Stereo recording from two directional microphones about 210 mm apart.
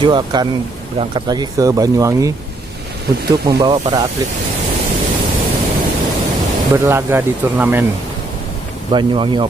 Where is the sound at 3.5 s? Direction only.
20° right (ahead or behind).